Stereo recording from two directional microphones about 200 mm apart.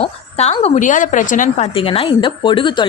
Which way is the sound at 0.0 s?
30° left (ahead or behind).